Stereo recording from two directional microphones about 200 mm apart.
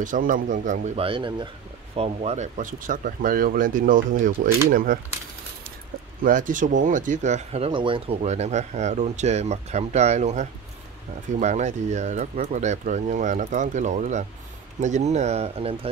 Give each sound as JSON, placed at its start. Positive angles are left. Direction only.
{"t": 0.0, "sound": "speech", "side_deg": -40}
{"t": 6.2, "sound": "speech", "side_deg": -40}